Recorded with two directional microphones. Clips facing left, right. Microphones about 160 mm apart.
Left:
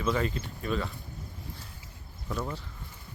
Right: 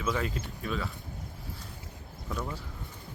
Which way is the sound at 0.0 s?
5° right (ahead or behind).